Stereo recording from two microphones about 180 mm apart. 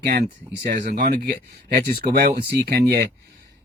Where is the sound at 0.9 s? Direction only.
55° right (ahead or behind).